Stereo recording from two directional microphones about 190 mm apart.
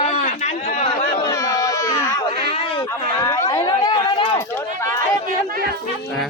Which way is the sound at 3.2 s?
20° left (ahead or behind).